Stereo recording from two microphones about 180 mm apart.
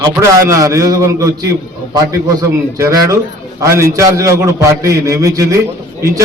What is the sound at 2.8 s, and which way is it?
A man's voice, 20° right (ahead or behind).